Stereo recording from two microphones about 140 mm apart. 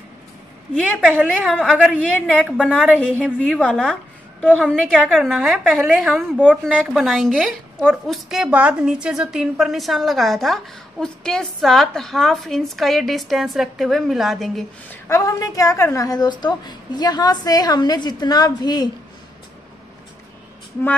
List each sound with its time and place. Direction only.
1.0 s a woman's voice: centre (ahead or behind)
3.5 s a woman's voice: 5° left (ahead or behind)
14.9 s a woman's voice: 20° left (ahead or behind)